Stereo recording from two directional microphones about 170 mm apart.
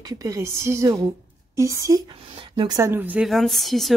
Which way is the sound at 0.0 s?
20° right (ahead or behind).